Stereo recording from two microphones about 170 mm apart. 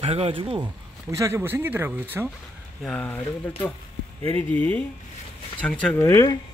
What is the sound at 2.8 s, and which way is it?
Speech, 10° left (ahead or behind).